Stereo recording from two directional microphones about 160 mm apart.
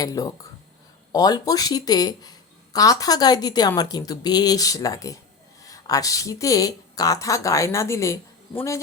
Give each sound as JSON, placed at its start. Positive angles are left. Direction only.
{"t": 0.0, "sound": "speech", "side_deg": 25}